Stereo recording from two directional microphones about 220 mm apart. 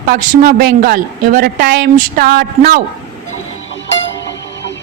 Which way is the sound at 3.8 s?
55° left (ahead or behind).